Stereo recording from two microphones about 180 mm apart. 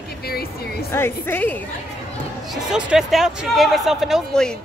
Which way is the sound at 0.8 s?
15° left (ahead or behind).